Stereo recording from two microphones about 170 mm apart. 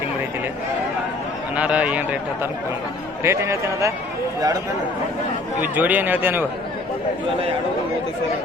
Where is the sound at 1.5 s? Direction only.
10° right (ahead or behind).